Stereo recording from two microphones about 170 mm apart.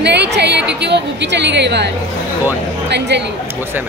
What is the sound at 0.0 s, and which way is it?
A woman's voice, 80° right.